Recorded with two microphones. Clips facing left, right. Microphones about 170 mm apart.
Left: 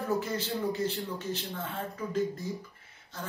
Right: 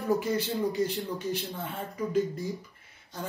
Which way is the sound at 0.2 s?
10° right (ahead or behind).